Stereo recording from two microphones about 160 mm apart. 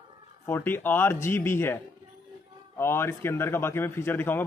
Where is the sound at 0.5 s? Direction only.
15° left (ahead or behind).